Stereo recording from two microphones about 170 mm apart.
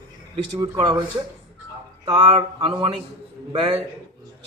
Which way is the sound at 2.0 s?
30° right (ahead or behind).